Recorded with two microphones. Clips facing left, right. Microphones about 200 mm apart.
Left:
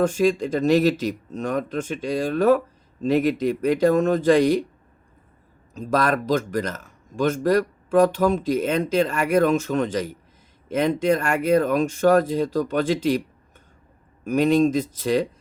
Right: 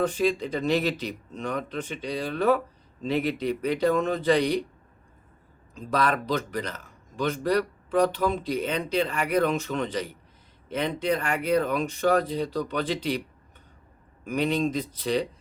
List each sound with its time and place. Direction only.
0.0 s speech: 45° left (ahead or behind)
5.7 s speech: 45° left (ahead or behind)
14.3 s speech: 45° left (ahead or behind)